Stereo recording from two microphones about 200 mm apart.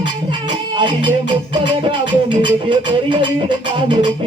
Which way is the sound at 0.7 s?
25° right (ahead or behind).